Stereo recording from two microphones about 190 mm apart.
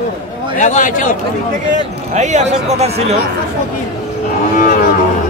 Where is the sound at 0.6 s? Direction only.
40° left (ahead or behind).